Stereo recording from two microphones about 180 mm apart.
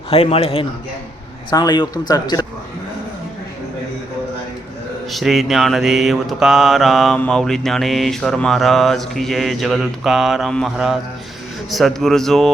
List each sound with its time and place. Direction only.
0.1 s a man's voice: 35° left (ahead or behind)
5.1 s mantra: centre (ahead or behind)